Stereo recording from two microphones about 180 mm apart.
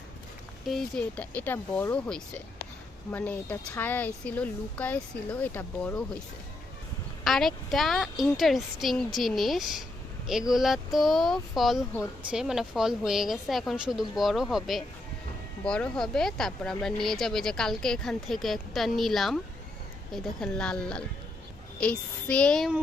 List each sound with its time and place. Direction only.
0.6 s speech: centre (ahead or behind)
7.3 s speech: centre (ahead or behind)